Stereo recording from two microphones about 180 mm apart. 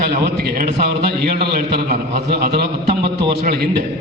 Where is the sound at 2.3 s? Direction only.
60° right (ahead or behind).